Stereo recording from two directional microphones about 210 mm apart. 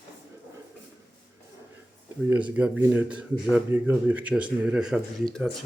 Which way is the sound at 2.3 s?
5° right (ahead or behind).